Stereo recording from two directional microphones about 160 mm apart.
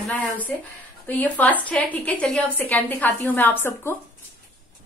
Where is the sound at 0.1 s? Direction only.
10° left (ahead or behind).